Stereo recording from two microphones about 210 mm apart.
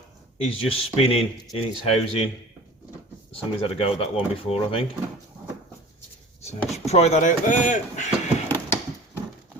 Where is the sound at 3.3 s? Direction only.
30° left (ahead or behind).